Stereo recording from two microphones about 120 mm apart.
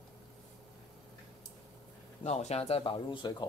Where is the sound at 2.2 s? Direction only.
70° left (ahead or behind); by 3.3 s 40° left (ahead or behind).